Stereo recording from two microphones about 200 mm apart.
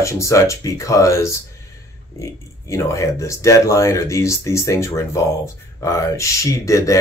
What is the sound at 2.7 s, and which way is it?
Speech, 15° left (ahead or behind).